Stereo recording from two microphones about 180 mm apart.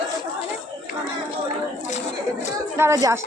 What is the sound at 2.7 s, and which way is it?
Speech, 15° right (ahead or behind).